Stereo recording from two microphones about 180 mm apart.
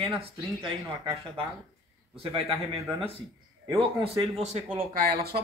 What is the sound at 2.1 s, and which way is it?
Speech, 30° right (ahead or behind).